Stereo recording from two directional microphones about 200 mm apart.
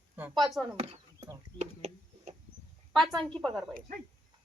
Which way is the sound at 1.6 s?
35° right (ahead or behind).